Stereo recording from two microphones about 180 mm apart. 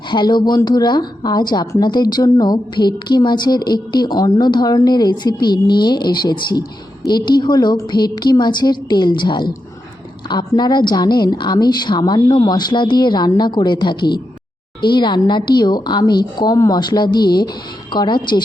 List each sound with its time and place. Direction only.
0.1 s a woman's voice: 25° left (ahead or behind)